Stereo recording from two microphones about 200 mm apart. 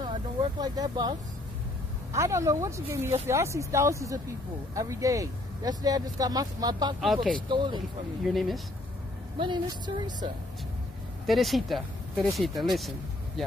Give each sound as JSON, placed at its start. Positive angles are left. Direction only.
{"t": 0.0, "sound": "vehicle", "side_deg": -20}
{"t": 2.1, "sound": "speech", "side_deg": -15}
{"t": 8.3, "sound": "speech", "side_deg": 0}
{"t": 9.4, "sound": "speech", "side_deg": -20}
{"t": 11.2, "sound": "speech", "side_deg": 0}